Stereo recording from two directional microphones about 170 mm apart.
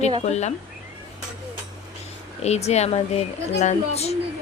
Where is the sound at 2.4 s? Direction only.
40° left (ahead or behind).